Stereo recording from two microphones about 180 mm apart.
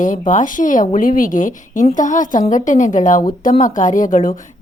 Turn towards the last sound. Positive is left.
turn(degrees=50)  # may be behind; listen again after turning